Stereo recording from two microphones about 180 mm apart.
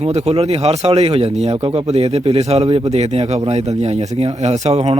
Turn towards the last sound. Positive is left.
turn(degrees=-35)  # may be behind; listen again after turning